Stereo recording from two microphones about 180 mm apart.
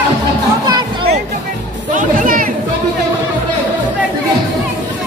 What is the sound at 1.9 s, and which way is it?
Music, 50° right (ahead or behind).